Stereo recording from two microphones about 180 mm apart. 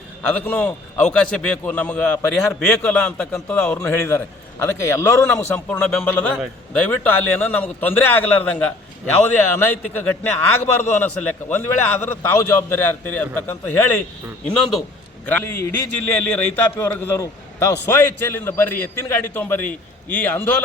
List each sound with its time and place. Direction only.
0.2 s a man's voice: 5° left (ahead or behind)